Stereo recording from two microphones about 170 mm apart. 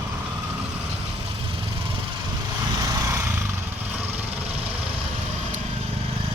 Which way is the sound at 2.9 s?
15° right (ahead or behind).